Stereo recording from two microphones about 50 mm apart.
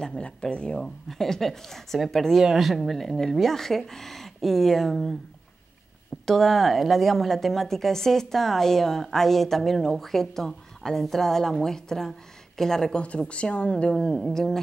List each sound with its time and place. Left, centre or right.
0.0 s speech: centre
0.7 s a woman's voice: centre
6.2 s a woman's voice: centre
13.3 s speech: left